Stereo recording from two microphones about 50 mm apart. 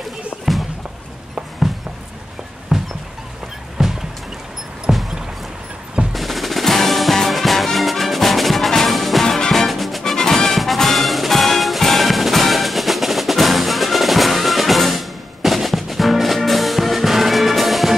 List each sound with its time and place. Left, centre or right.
2.7 s a sound: centre
3.8 s music: centre
6.1 s music: centre
10.1 s music: centre